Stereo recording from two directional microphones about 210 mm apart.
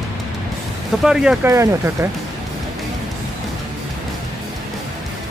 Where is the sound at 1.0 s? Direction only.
5° right (ahead or behind).